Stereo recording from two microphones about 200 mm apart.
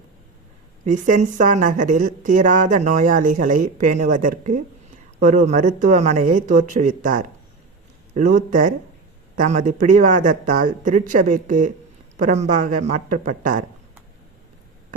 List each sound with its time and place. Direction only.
0.9 s speech: 40° right (ahead or behind)